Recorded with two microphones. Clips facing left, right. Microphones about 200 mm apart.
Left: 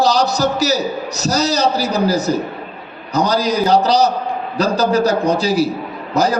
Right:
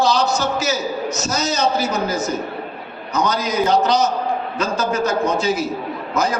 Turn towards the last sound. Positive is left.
turn(degrees=35)  # may be behind; listen again after turning